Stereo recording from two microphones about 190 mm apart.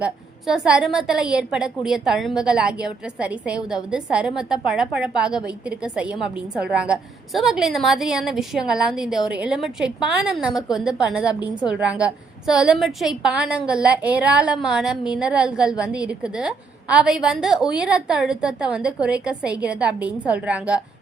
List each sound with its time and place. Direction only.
0.0 s a woman's voice: 5° right (ahead or behind)